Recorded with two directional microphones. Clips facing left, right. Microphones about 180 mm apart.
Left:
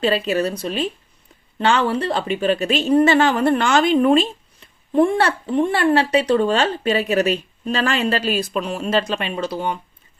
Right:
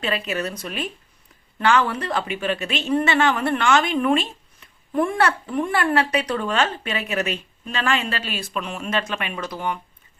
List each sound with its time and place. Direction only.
0.0 s speech: 30° left (ahead or behind)